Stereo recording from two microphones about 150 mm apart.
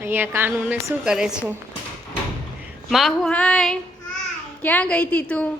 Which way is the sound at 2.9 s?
Centre (ahead or behind).